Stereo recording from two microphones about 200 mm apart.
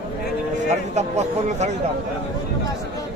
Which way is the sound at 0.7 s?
35° right (ahead or behind).